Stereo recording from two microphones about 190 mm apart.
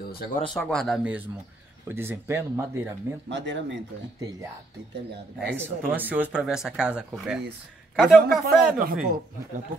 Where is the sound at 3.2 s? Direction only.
70° right (ahead or behind).